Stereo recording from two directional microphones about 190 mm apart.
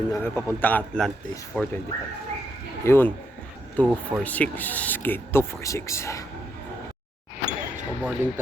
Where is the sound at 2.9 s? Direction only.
10° left (ahead or behind).